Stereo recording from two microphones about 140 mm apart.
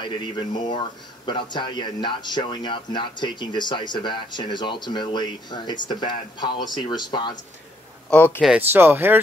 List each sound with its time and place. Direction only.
0.0 s speech: 35° left (ahead or behind)
8.1 s speech: 15° left (ahead or behind)
8.4 s speech: 10° right (ahead or behind)